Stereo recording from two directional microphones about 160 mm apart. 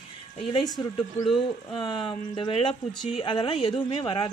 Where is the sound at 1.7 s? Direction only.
30° left (ahead or behind).